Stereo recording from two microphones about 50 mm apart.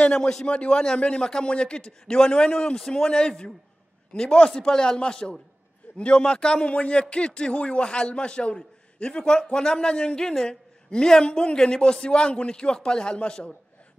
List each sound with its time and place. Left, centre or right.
0.0 s a man's voice: centre